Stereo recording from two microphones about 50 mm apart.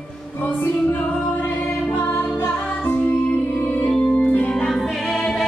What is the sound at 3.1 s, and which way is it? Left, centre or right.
Music, left.